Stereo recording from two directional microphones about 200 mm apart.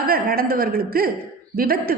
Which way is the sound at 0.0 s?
50° right (ahead or behind).